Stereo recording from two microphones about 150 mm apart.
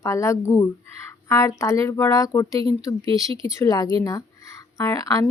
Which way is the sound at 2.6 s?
40° right (ahead or behind).